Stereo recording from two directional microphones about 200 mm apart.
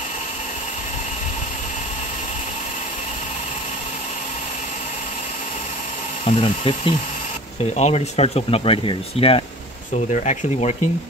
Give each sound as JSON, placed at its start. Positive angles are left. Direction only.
{"t": 6.2, "sound": "speech", "side_deg": 25}